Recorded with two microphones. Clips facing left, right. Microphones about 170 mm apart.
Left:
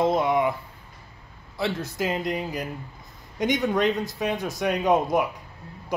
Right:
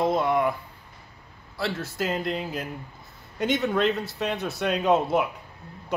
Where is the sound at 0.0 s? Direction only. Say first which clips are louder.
Left 1 dB; 20° left (ahead or behind).